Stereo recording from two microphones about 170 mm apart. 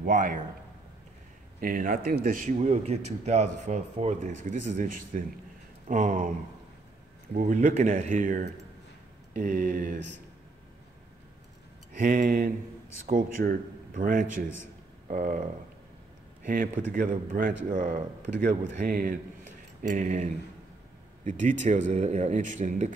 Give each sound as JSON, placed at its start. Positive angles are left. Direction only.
{"t": 0.0, "sound": "speech", "side_deg": -50}
{"t": 1.6, "sound": "speech", "side_deg": -55}
{"t": 7.3, "sound": "speech", "side_deg": -50}
{"t": 9.9, "sound": "speech", "side_deg": -90}
{"t": 12.0, "sound": "speech", "side_deg": -55}
{"t": 21.3, "sound": "speech", "side_deg": -45}